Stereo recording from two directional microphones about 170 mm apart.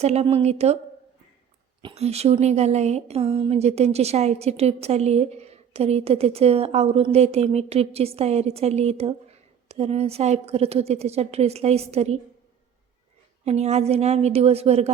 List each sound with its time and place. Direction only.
0.0 s a woman's voice: 40° right (ahead or behind)
1.8 s a woman's voice: 40° right (ahead or behind)
13.4 s a woman's voice: 40° right (ahead or behind)